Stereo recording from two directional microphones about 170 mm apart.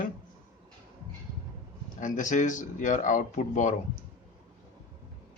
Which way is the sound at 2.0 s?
45° left (ahead or behind).